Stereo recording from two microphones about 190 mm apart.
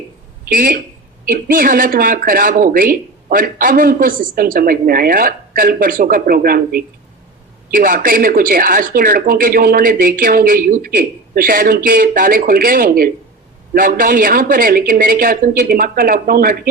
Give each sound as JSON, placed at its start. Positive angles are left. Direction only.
{"t": 0.4, "sound": "speech", "side_deg": -50}